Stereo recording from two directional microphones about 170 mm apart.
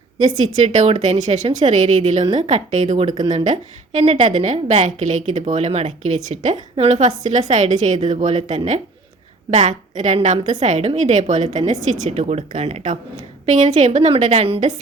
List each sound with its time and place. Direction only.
0.6 s a woman's voice: 45° right (ahead or behind)